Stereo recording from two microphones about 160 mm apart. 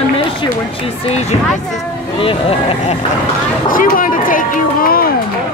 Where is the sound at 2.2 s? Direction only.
35° left (ahead or behind).